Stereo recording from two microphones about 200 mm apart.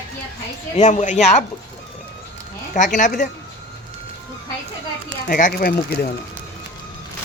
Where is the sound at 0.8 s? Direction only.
35° left (ahead or behind).